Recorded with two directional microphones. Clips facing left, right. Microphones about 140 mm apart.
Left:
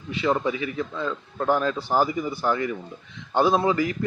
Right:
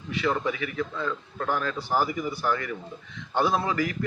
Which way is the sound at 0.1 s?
25° left (ahead or behind).